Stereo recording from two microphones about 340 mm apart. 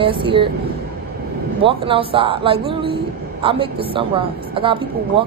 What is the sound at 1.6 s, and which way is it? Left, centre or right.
A woman's voice, centre.